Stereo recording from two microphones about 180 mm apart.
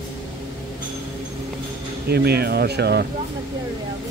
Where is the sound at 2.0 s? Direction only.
60° right (ahead or behind).